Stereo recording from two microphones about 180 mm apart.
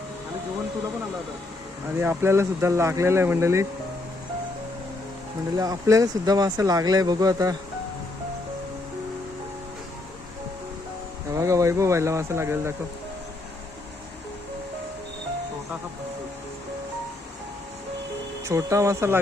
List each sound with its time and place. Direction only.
2.0 s speech: 15° right (ahead or behind)
5.5 s speech: 20° right (ahead or behind)
11.3 s speech: 15° right (ahead or behind)
18.4 s speech: 15° right (ahead or behind)